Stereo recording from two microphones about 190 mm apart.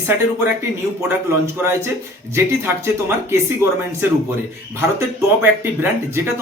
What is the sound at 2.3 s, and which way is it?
Speech, 15° right (ahead or behind).